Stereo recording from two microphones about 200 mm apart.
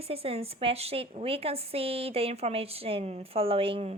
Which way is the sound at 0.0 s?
30° right (ahead or behind).